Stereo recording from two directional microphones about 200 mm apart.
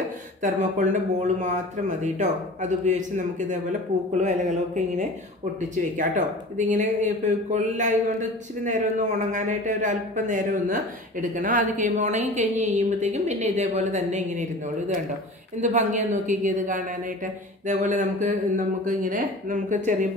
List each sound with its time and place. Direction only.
0.4 s a man's voice: 35° right (ahead or behind)